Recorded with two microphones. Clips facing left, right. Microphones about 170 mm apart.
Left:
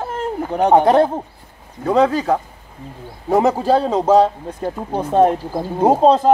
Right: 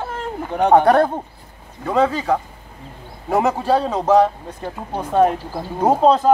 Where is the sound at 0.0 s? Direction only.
35° left (ahead or behind).